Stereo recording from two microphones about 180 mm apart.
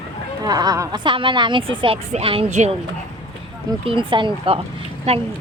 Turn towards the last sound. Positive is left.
turn(degrees=-35)  # may be behind; listen again after turning